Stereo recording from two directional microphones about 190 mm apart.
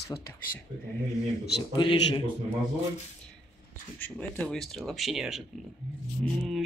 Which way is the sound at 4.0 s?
5° left (ahead or behind).